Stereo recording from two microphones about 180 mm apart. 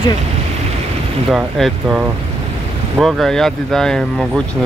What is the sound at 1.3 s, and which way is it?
Speech, 5° right (ahead or behind).